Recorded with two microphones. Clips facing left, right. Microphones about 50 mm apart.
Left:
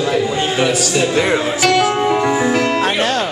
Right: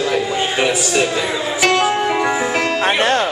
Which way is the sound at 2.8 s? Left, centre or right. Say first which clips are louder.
Right 1 dB; right.